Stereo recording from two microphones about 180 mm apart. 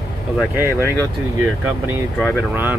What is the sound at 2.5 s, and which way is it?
Speech, 10° right (ahead or behind).